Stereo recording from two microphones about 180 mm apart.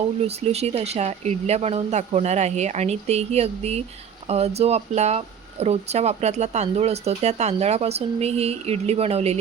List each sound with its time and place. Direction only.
0.2 s speech: 35° right (ahead or behind)